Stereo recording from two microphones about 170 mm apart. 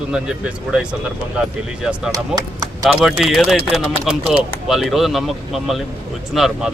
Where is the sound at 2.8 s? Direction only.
Centre (ahead or behind).